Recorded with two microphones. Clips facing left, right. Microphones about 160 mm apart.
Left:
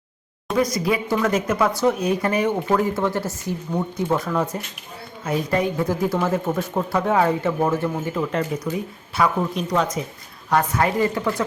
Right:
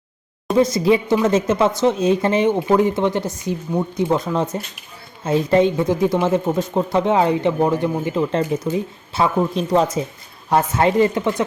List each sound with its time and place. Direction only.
0.5 s speech: 25° right (ahead or behind)